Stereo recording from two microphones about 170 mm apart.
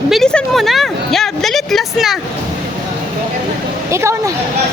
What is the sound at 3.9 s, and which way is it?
Speech, 15° right (ahead or behind).